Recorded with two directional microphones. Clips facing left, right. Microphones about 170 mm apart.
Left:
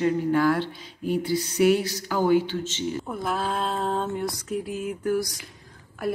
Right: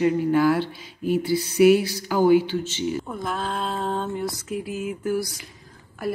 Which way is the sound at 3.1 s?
5° left (ahead or behind).